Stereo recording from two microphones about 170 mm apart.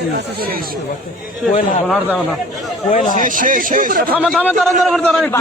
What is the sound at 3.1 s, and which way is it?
Speech, 50° right (ahead or behind).